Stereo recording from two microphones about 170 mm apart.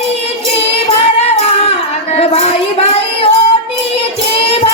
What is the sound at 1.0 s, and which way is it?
Child singing, 35° left (ahead or behind).